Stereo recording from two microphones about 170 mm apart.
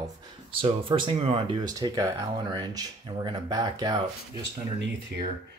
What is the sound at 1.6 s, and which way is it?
Speech, 25° right (ahead or behind).